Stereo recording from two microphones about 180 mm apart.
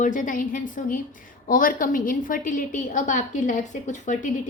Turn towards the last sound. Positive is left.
turn(degrees=45)  # may be behind; listen again after turning